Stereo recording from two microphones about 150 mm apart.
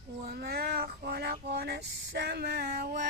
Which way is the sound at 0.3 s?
90° right.